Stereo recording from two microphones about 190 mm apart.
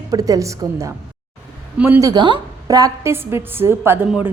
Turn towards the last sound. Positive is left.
turn(degrees=-10)  # may be behind; listen again after turning